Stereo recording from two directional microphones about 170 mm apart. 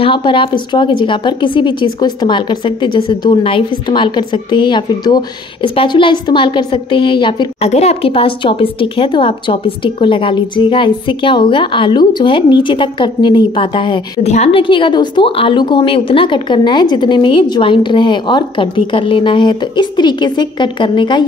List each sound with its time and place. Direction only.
0.0 s a woman's voice: 30° left (ahead or behind)